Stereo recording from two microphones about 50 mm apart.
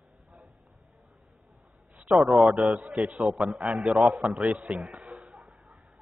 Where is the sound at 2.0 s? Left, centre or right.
Centre.